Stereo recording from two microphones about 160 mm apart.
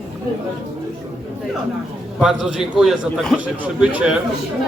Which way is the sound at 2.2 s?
5° right (ahead or behind).